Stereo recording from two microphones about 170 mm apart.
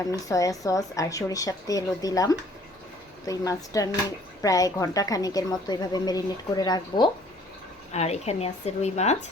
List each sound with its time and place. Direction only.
0.0 s a woman's voice: 20° left (ahead or behind)
7.9 s speech: 40° left (ahead or behind)